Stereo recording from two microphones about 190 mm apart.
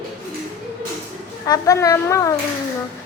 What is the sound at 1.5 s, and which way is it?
Speech, 15° left (ahead or behind).